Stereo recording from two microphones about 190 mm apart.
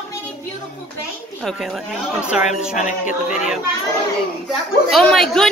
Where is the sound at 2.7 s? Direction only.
45° left (ahead or behind).